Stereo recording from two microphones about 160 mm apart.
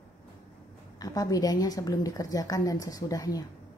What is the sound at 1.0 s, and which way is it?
A woman's voice, 20° left (ahead or behind).